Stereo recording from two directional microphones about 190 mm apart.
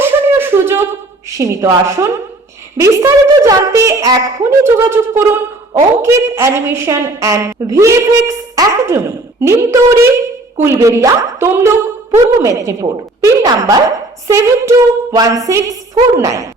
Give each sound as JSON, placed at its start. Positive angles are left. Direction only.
{"t": 0.0, "sound": "beatboxing", "side_deg": -10}
{"t": 1.4, "sound": "a woman's voice", "side_deg": -15}